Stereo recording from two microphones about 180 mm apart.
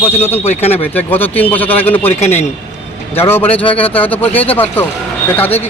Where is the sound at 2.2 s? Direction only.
40° left (ahead or behind).